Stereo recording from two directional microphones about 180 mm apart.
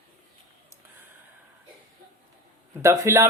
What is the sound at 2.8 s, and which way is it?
Speech, 15° right (ahead or behind).